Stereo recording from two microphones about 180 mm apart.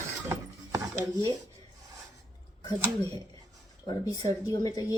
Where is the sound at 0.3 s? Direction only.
15° right (ahead or behind).